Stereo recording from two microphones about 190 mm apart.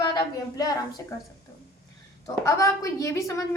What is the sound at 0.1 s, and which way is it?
Speech, 20° left (ahead or behind).